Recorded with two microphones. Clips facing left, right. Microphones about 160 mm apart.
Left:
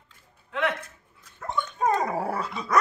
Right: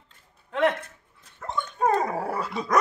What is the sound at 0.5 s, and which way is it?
Speech, 40° right (ahead or behind).